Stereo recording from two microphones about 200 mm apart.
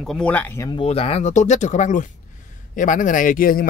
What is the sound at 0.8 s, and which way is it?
Speech, 30° left (ahead or behind).